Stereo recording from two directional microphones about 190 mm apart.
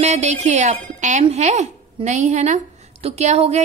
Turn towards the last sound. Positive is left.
turn(degrees=-35)  # may be behind; listen again after turning